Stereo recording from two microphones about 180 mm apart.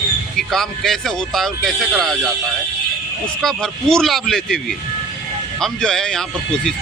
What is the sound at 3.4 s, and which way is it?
Speech, centre (ahead or behind).